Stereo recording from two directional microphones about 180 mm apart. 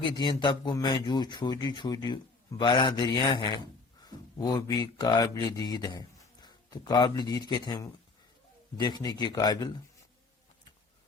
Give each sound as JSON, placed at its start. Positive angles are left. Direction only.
{"t": 0.1, "sound": "speech", "side_deg": 25}